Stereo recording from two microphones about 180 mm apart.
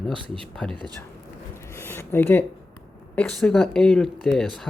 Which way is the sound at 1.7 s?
15° left (ahead or behind).